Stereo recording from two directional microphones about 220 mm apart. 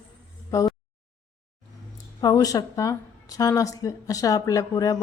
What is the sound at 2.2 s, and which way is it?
Speech, 15° left (ahead or behind).